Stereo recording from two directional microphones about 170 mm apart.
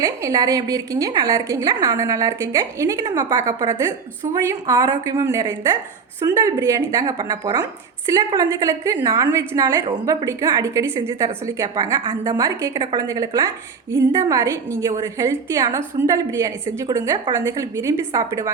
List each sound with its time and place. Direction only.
0.0 s a woman's voice: 20° right (ahead or behind)